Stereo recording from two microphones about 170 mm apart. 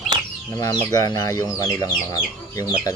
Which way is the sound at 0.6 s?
25° left (ahead or behind).